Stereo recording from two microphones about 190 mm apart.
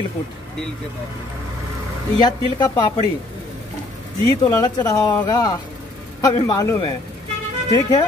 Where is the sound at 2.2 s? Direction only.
20° left (ahead or behind).